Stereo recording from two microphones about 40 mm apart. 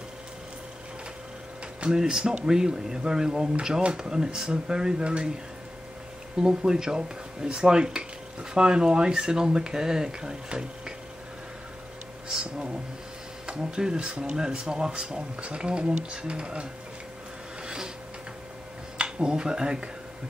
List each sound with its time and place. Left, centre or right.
1.9 s speech: centre
6.3 s speech: centre
12.3 s speech: centre
17.6 s printer: centre
18.9 s speech: right